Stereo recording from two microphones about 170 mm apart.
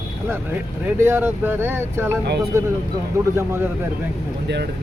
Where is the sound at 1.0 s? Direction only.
15° right (ahead or behind).